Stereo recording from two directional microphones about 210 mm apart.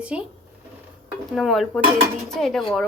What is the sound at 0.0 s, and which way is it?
Speech, 5° right (ahead or behind).